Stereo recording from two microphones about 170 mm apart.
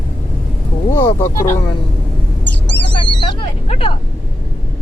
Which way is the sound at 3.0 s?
30° left (ahead or behind).